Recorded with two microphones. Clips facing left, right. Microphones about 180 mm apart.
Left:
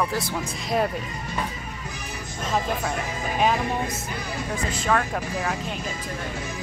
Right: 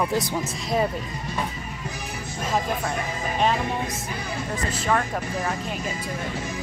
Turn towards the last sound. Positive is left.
turn(degrees=0)  # may be behind; listen again after turning